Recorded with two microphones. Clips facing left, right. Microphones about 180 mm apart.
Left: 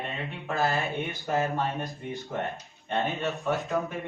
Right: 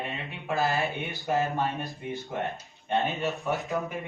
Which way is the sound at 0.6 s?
15° right (ahead or behind).